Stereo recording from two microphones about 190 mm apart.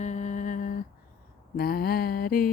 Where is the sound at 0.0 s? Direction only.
40° left (ahead or behind).